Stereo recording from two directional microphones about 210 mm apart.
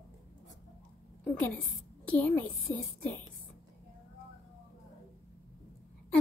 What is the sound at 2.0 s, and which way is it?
Speech, 5° left (ahead or behind).